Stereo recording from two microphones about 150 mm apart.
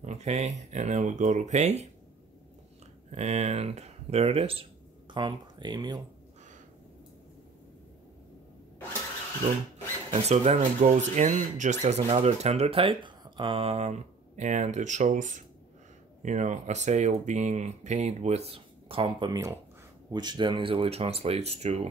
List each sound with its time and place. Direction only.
0.0 s speech: 50° right (ahead or behind)
3.1 s speech: 45° right (ahead or behind)
5.1 s speech: 30° right (ahead or behind)
10.1 s speech: 45° right (ahead or behind)